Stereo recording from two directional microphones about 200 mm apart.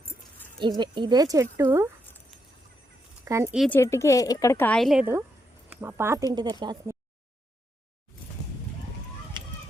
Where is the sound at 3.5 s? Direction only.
Centre (ahead or behind).